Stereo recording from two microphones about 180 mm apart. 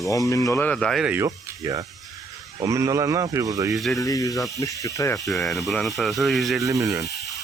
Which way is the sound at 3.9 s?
20° left (ahead or behind).